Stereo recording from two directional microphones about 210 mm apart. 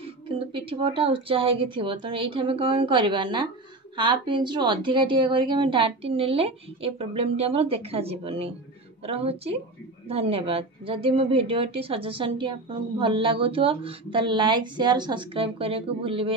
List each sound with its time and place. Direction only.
0.0 s a woman's voice: 25° right (ahead or behind)